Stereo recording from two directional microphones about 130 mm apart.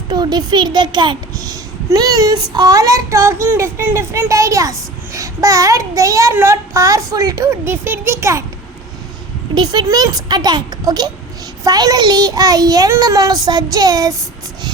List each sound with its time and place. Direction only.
0.1 s a child's voice: 35° right (ahead or behind)
9.6 s a child's voice: 30° right (ahead or behind)